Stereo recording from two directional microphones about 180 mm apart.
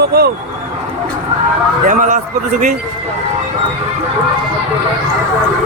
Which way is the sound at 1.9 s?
45° right (ahead or behind).